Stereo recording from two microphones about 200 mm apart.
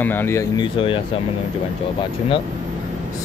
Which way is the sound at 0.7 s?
25° left (ahead or behind).